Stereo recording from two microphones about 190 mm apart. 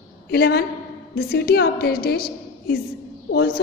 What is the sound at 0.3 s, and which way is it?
A woman's voice, 55° left (ahead or behind).